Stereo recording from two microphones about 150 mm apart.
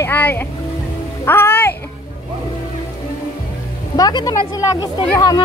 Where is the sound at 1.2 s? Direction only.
15° left (ahead or behind).